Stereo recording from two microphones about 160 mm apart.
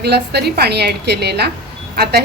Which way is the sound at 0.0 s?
90° right.